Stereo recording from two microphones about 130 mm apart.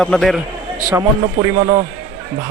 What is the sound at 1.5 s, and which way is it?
Speech, 35° right (ahead or behind).